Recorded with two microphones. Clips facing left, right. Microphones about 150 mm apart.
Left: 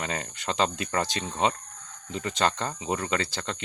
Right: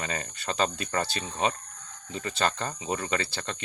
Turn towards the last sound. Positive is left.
turn(degrees=20)  # may be behind; listen again after turning